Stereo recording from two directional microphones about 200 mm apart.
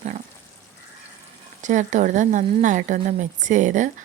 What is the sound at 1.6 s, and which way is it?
A woman's voice, 40° right (ahead or behind).